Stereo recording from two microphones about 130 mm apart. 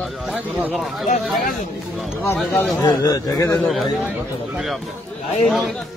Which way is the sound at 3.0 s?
30° left (ahead or behind).